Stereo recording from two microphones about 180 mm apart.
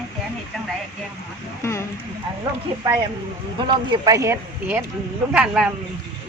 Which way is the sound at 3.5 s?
25° right (ahead or behind).